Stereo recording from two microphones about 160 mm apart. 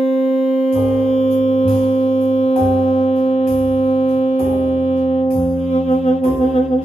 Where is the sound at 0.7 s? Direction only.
45° left (ahead or behind).